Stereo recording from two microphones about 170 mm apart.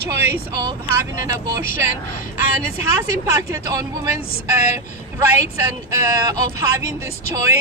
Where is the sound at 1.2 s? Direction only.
15° right (ahead or behind).